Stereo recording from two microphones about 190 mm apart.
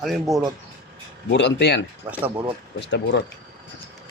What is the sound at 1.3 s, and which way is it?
Speech, 60° left (ahead or behind).